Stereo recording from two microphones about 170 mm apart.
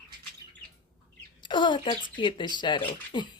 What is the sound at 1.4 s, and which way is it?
Speech, 25° left (ahead or behind).